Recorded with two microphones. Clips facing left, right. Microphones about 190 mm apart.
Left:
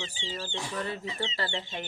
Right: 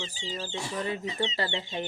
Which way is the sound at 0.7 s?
15° right (ahead or behind).